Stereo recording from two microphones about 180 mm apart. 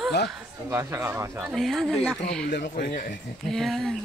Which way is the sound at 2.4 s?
60° left (ahead or behind).